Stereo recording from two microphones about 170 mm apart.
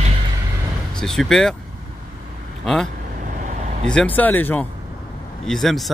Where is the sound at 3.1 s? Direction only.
50° right (ahead or behind).